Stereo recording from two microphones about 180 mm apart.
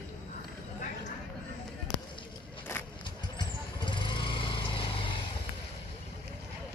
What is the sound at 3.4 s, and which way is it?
Vehicle, 25° left (ahead or behind).